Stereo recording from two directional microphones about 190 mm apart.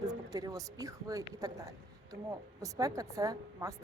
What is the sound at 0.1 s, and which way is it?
Speech, 20° right (ahead or behind).